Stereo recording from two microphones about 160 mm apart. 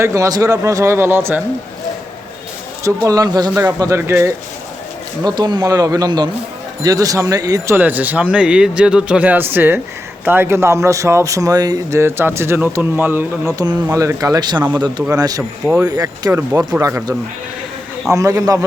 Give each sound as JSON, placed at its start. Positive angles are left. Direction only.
{"t": 0.0, "sound": "speech", "side_deg": -20}
{"t": 2.8, "sound": "speech", "side_deg": -20}
{"t": 3.5, "sound": "speech", "side_deg": -10}
{"t": 5.2, "sound": "speech", "side_deg": -25}
{"t": 7.8, "sound": "speech", "side_deg": -10}
{"t": 15.6, "sound": "speech", "side_deg": -5}
{"t": 15.9, "sound": "speech", "side_deg": -25}
{"t": 16.7, "sound": "speech", "side_deg": -15}
{"t": 18.1, "sound": "speech", "side_deg": -20}